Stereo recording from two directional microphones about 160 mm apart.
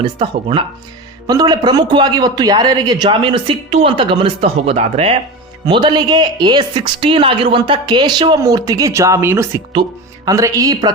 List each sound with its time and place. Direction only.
0.2 s a man's voice: 30° right (ahead or behind)
5.6 s speech: 30° right (ahead or behind)